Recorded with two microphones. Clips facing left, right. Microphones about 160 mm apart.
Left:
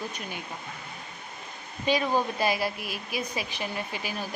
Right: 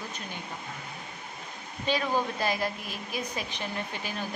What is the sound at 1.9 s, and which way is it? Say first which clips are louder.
Speech: left 3 dB; 10° left (ahead or behind).